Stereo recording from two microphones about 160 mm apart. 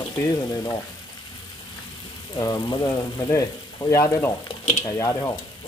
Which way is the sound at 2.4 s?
25° left (ahead or behind).